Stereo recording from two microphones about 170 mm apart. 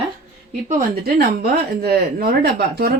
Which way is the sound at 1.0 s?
70° right (ahead or behind).